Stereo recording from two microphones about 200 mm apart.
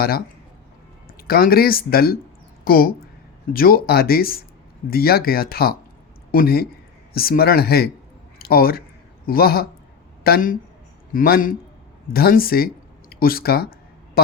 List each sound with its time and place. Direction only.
1.3 s speech: 50° left (ahead or behind)